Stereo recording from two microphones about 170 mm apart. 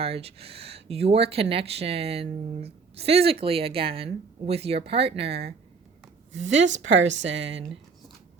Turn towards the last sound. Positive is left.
turn(degrees=-90)